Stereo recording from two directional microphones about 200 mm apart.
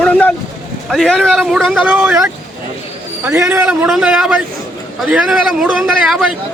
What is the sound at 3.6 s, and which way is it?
A man's voice, centre (ahead or behind).